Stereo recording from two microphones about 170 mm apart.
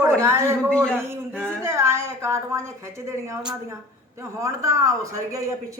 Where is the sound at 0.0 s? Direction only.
15° right (ahead or behind).